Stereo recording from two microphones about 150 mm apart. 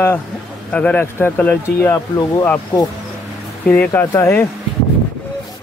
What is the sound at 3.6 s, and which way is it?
Speech, 10° left (ahead or behind).